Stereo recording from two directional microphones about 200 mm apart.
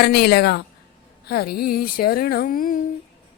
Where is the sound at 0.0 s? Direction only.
55° left (ahead or behind).